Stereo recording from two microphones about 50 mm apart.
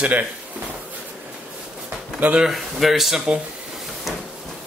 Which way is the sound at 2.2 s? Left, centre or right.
Right.